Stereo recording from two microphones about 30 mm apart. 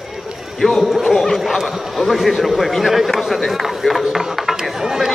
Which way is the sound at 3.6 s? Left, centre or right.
Centre.